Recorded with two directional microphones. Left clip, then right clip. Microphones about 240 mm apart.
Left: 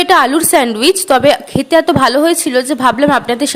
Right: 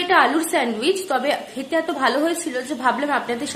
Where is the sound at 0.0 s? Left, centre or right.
Left.